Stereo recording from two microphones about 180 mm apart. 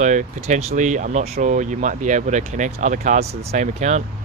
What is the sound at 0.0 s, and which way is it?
Speech, 45° right (ahead or behind).